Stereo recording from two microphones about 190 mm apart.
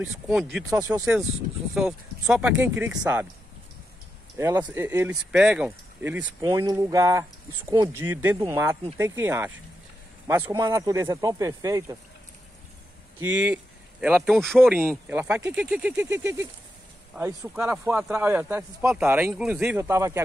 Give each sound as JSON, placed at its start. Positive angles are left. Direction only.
{"t": 0.4, "sound": "speech", "side_deg": 0}
{"t": 0.7, "sound": "speech", "side_deg": -15}
{"t": 1.7, "sound": "speech", "side_deg": -5}
{"t": 4.4, "sound": "speech", "side_deg": -15}
{"t": 13.2, "sound": "speech", "side_deg": -5}
{"t": 14.7, "sound": "speech", "side_deg": -10}